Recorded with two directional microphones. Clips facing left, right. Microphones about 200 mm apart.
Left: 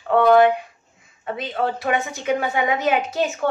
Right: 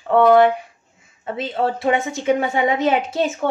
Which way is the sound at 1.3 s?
25° right (ahead or behind).